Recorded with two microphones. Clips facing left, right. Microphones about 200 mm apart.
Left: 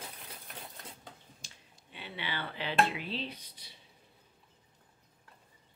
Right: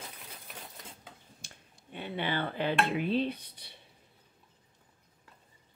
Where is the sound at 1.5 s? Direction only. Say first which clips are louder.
Right 7 dB; 50° right (ahead or behind).